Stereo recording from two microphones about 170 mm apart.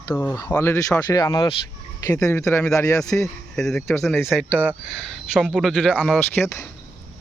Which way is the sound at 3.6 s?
5° left (ahead or behind).